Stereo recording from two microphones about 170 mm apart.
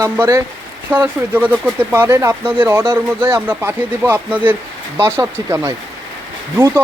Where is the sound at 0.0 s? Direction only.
20° right (ahead or behind).